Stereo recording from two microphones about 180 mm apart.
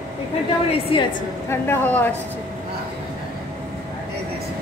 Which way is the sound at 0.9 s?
30° left (ahead or behind).